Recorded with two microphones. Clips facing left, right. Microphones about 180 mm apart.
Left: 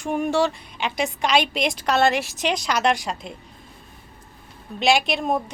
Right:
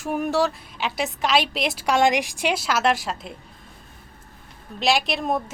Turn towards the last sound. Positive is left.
turn(degrees=0)  # may be behind; listen again after turning